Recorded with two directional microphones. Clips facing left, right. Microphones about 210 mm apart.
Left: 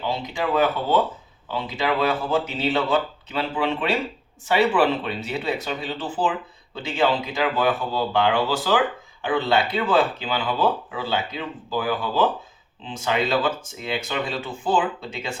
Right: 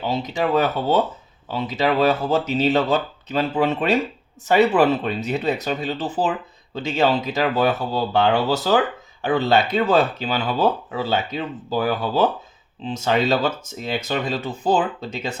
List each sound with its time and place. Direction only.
0.1 s speech: 40° right (ahead or behind)